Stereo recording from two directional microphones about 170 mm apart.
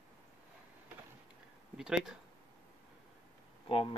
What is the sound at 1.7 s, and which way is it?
Speech, 5° right (ahead or behind).